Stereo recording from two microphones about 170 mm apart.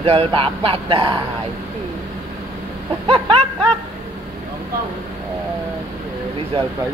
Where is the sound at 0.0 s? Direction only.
35° right (ahead or behind).